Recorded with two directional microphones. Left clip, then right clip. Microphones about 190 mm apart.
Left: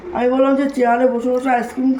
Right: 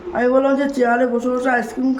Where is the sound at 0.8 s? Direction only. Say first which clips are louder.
Left 3 dB; 20° right (ahead or behind).